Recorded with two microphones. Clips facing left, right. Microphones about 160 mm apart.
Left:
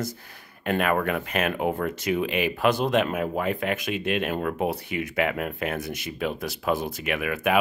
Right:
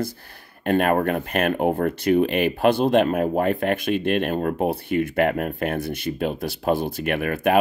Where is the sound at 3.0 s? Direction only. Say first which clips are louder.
Right 6 dB; 40° right (ahead or behind).